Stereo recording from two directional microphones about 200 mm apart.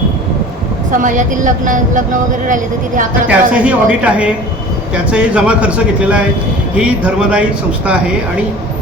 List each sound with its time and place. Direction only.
0.9 s a woman's voice: 40° right (ahead or behind)
3.2 s speech: 5° right (ahead or behind)